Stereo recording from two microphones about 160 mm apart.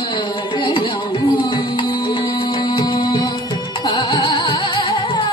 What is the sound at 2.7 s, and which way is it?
Music, 30° left (ahead or behind).